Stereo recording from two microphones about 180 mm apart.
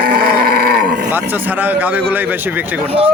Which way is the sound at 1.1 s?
10° right (ahead or behind).